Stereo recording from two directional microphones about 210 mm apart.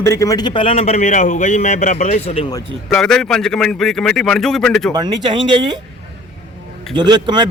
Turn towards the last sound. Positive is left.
turn(degrees=-20)  # may be behind; listen again after turning